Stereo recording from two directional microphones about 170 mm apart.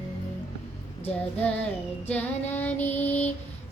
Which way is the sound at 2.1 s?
10° left (ahead or behind).